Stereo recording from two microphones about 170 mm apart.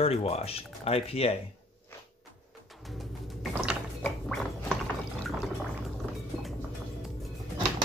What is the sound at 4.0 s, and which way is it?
Gargling, 5° left (ahead or behind).